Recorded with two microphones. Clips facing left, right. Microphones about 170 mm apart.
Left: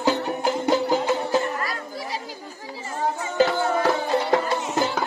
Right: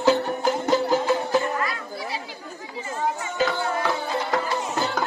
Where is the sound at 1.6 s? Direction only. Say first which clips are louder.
Right 1 dB; 40° left (ahead or behind).